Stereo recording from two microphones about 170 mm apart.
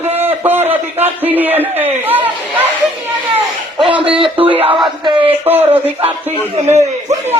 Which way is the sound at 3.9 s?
30° right (ahead or behind).